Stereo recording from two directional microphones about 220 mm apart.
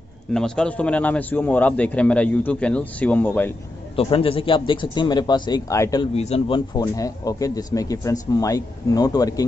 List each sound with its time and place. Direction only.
0.3 s a man's voice: 5° left (ahead or behind)
3.9 s speech: 25° left (ahead or behind)
6.1 s speech: 30° left (ahead or behind)